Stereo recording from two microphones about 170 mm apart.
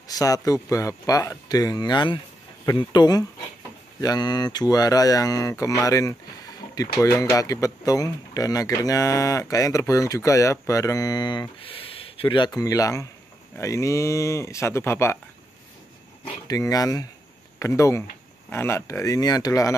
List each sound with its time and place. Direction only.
0.1 s speech: 20° left (ahead or behind)
16.4 s speech: 20° left (ahead or behind)